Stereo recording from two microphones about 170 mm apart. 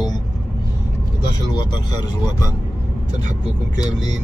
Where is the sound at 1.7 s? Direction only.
20° left (ahead or behind).